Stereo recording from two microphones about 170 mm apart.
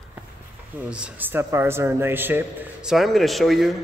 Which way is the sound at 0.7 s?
5° right (ahead or behind).